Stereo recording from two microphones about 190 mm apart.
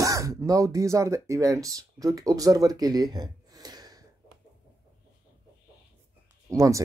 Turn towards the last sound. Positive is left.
turn(degrees=-15)  # may be behind; listen again after turning